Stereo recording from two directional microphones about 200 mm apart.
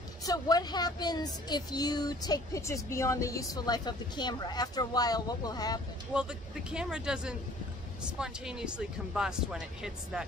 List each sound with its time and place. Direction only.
0.2 s speech: 20° left (ahead or behind)
6.1 s speech: 5° right (ahead or behind)